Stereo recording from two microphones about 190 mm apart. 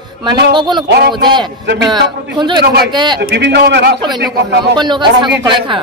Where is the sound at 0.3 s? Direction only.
25° right (ahead or behind).